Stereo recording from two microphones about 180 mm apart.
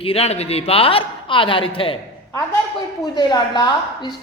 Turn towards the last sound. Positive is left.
turn(degrees=25)  # may be behind; listen again after turning